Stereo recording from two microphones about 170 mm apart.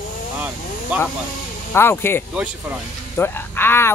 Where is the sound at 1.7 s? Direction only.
15° left (ahead or behind).